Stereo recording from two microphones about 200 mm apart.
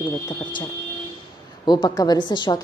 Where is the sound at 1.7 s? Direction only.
20° left (ahead or behind).